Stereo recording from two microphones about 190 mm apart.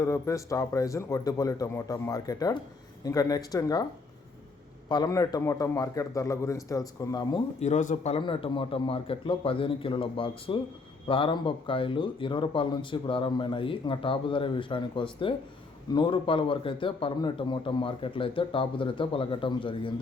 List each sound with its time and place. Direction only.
0.0 s a man's voice: 15° left (ahead or behind)
4.9 s a man's voice: 20° left (ahead or behind)
7.6 s speech: 40° left (ahead or behind)